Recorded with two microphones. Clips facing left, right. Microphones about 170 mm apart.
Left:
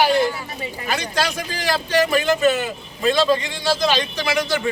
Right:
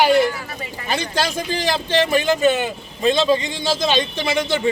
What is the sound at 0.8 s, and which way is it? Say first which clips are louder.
A man's voice: right 1 dB; 30° right (ahead or behind).